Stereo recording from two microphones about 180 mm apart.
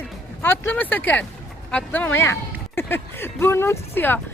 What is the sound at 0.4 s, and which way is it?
Speech, 10° left (ahead or behind).